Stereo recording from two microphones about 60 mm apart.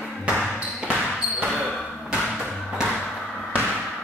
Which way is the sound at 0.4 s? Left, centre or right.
Centre.